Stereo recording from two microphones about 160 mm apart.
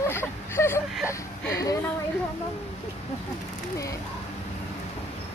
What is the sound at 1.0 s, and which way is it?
Speech, 20° left (ahead or behind).